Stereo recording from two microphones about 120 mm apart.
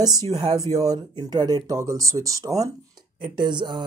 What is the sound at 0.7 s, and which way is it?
Speech, 35° right (ahead or behind).